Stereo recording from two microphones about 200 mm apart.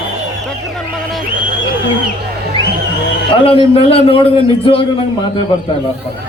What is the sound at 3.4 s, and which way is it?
A man's voice, 30° left (ahead or behind).